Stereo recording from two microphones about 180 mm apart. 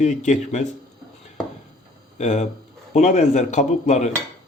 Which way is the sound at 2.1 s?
40° left (ahead or behind).